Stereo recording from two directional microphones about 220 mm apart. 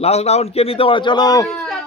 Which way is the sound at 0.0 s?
30° left (ahead or behind).